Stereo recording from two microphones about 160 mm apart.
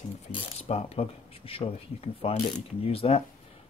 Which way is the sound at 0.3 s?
40° left (ahead or behind).